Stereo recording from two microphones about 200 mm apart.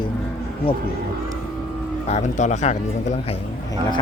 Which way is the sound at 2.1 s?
35° left (ahead or behind).